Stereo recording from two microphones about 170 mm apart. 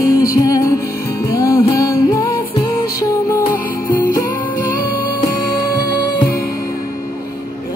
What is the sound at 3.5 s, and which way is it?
Music, 55° left (ahead or behind).